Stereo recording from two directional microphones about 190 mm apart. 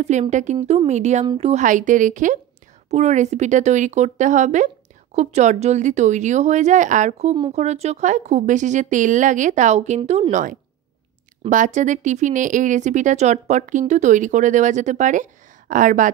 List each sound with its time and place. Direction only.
0.0 s speech: 35° right (ahead or behind)
1.2 s a woman's voice: 20° right (ahead or behind)
1.5 s a woman's voice: 40° right (ahead or behind)